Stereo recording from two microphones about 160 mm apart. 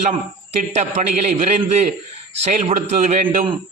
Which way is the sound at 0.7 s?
45° right (ahead or behind).